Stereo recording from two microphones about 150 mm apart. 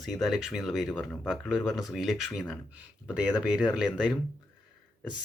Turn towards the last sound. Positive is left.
turn(degrees=-5)  # may be behind; listen again after turning